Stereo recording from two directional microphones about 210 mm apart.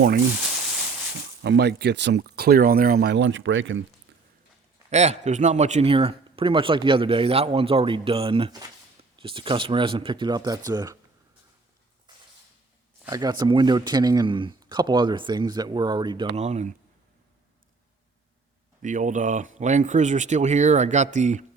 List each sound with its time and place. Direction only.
1.5 s speech: 50° right (ahead or behind)
4.9 s speech: 30° right (ahead or behind)
13.1 s speech: 20° right (ahead or behind)
18.8 s speech: 35° right (ahead or behind)